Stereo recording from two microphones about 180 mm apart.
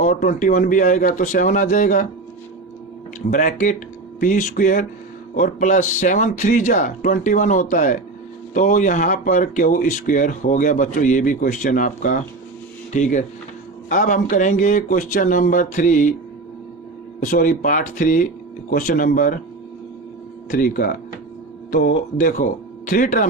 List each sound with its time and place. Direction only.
0.0 s speech: 45° left (ahead or behind)
3.2 s speech: 45° left (ahead or behind)
17.2 s speech: 50° left (ahead or behind)
20.5 s speech: 50° left (ahead or behind)